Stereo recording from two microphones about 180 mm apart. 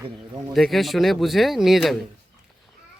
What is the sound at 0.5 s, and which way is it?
Speech, centre (ahead or behind).